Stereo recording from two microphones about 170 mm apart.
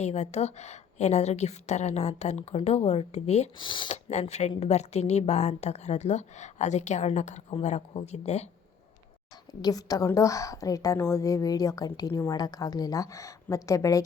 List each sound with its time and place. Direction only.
0.0 s a woman's voice: 40° left (ahead or behind)
3.9 s a woman's voice: 40° left (ahead or behind)
9.5 s a woman's voice: 20° left (ahead or behind)